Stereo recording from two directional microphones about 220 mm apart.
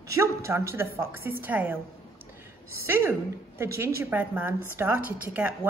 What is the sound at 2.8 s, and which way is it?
A woman's voice, 10° right (ahead or behind).